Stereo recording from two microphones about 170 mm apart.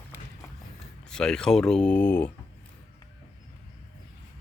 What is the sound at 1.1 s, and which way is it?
Speech, 5° left (ahead or behind).